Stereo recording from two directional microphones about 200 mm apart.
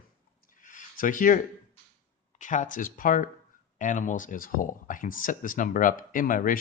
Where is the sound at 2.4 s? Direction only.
40° left (ahead or behind).